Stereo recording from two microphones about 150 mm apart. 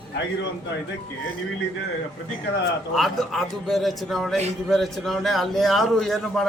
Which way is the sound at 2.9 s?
Centre (ahead or behind).